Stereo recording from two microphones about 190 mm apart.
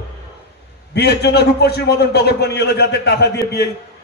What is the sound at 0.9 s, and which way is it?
A man's voice, 60° left (ahead or behind).